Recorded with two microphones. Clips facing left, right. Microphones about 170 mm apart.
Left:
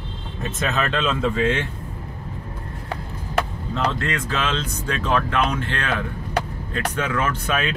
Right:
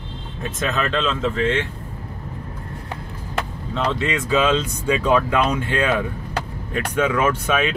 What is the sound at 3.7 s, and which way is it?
Speech, centre (ahead or behind).